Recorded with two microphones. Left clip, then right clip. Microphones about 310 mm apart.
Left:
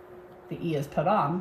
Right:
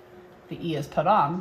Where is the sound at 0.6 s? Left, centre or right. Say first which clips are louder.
Right 3 dB; centre.